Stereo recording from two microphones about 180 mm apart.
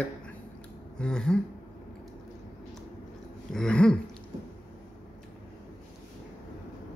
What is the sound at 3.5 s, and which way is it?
Speech, 5° left (ahead or behind).